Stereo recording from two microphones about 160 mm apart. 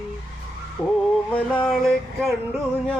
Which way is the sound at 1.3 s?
5° left (ahead or behind).